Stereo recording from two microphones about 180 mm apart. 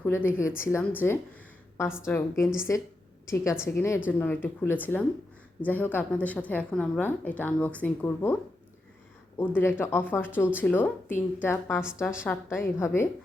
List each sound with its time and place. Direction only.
0.0 s a woman's voice: 10° left (ahead or behind)
9.4 s a woman's voice: 10° left (ahead or behind)